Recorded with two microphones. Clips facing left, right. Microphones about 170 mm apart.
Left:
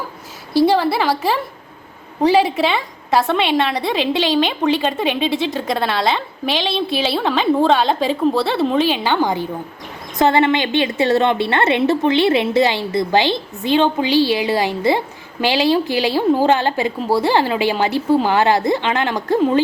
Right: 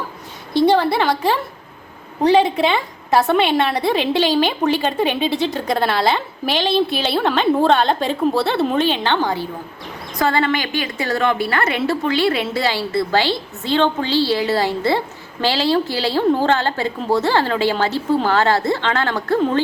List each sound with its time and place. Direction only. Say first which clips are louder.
0.5 s a woman's voice: even; 5° left (ahead or behind)